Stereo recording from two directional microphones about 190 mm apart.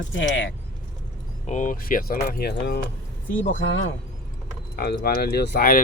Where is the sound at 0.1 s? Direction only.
80° left.